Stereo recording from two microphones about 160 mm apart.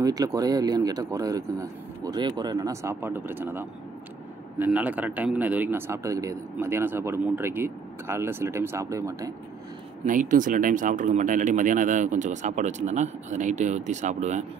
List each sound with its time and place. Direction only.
0.0 s a man's voice: 20° right (ahead or behind)
10.0 s speech: 55° right (ahead or behind)